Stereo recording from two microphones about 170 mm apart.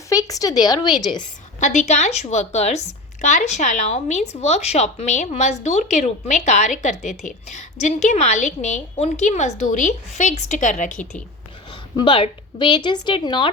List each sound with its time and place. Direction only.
0.1 s speech: 20° left (ahead or behind)
1.5 s a woman's voice: 45° left (ahead or behind)
11.7 s a woman's voice: 30° left (ahead or behind)